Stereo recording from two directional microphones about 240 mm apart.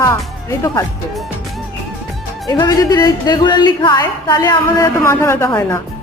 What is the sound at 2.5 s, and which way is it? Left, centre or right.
A woman's voice, centre.